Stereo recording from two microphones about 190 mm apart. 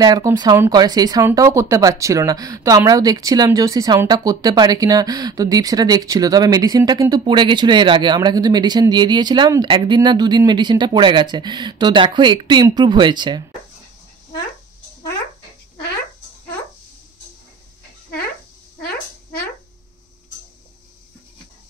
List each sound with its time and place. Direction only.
0.0 s speech: 20° right (ahead or behind)